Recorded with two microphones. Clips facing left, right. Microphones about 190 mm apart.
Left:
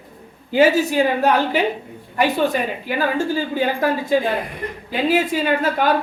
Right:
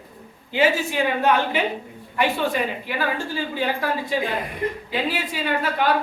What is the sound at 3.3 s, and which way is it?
A woman's voice, 45° left (ahead or behind).